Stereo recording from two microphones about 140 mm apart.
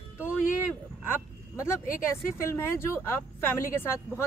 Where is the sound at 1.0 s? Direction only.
20° left (ahead or behind).